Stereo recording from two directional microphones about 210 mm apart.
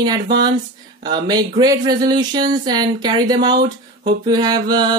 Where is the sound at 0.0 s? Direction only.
20° right (ahead or behind).